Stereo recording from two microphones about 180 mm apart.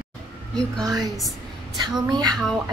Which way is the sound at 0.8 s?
20° right (ahead or behind).